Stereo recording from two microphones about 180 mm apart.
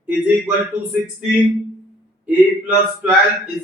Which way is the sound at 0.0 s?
10° right (ahead or behind).